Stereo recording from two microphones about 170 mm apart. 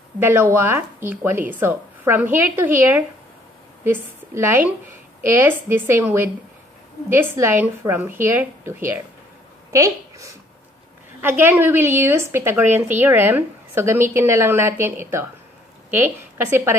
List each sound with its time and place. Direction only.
0.2 s a woman's voice: 15° right (ahead or behind)